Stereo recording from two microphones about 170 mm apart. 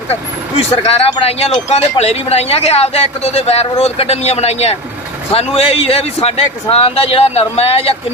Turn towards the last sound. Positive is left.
turn(degrees=35)  # may be behind; listen again after turning